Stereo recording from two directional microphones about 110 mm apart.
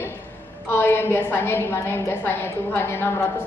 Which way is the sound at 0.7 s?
20° left (ahead or behind).